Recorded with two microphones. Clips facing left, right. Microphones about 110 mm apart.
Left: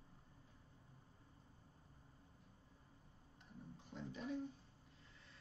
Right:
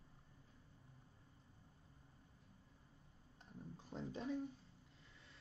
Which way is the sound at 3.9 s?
35° right (ahead or behind).